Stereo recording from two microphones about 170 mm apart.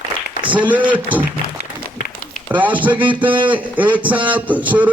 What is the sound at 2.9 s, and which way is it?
Speech, 30° right (ahead or behind).